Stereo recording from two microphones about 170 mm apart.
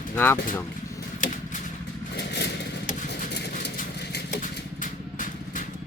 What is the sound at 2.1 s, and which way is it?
Vehicle, 80° left.